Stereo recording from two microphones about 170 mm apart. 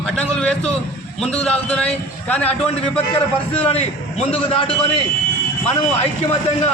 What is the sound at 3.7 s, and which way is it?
A man's voice, 40° left (ahead or behind).